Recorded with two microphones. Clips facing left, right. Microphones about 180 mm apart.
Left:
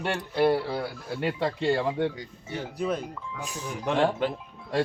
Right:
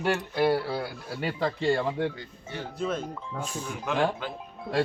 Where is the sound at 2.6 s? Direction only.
15° left (ahead or behind).